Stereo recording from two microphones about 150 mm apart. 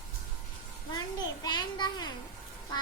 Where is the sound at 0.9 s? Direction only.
30° left (ahead or behind).